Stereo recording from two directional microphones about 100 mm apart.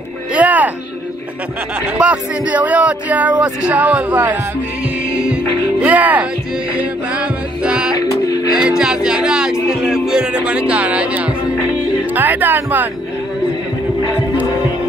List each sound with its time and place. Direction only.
0.3 s music: 15° right (ahead or behind)
2.0 s speech: 15° right (ahead or behind)
5.8 s speech: 15° right (ahead or behind)
6.8 s music: 15° right (ahead or behind)
8.5 s speech: 5° right (ahead or behind)
9.7 s music: 5° right (ahead or behind)
10.7 s speech: 15° right (ahead or behind)